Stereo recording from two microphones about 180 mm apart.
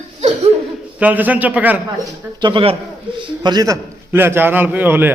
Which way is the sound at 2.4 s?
25° right (ahead or behind).